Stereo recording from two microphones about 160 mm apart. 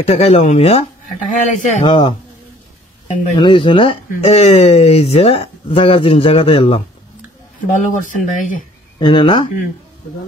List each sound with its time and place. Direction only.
0.0 s speech: 40° left (ahead or behind)
1.2 s speech: 55° left (ahead or behind)
1.9 s speech: 30° left (ahead or behind)
3.3 s speech: 30° left (ahead or behind)
7.7 s speech: 55° left (ahead or behind)
9.0 s speech: 30° left (ahead or behind)